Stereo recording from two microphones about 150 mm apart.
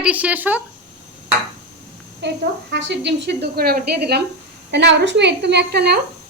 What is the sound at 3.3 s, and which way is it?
Speech, 90° right.